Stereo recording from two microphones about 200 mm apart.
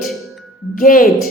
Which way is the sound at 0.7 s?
45° left (ahead or behind).